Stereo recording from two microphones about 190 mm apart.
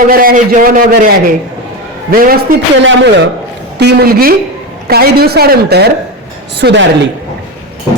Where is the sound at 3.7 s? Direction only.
55° right (ahead or behind).